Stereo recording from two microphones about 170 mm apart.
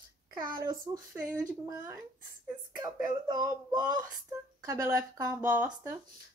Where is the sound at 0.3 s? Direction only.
20° right (ahead or behind).